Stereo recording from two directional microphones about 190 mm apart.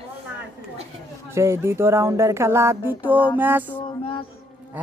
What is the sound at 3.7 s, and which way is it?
Speech, 25° left (ahead or behind).